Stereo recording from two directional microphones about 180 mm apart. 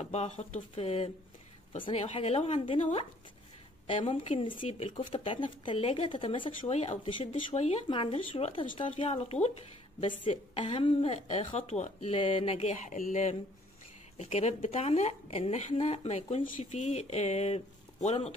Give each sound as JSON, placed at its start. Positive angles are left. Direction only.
{"t": 0.0, "sound": "speech", "side_deg": 35}